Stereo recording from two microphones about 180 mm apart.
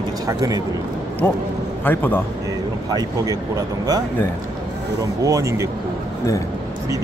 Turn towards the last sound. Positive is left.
turn(degrees=-15)  # may be behind; listen again after turning